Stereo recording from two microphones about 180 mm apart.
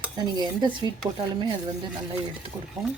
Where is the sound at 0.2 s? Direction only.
25° right (ahead or behind).